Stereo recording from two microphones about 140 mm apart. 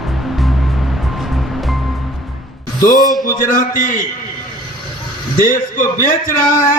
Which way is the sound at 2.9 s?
Centre (ahead or behind).